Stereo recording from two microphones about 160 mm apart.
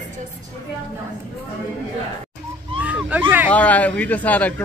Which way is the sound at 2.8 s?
10° right (ahead or behind).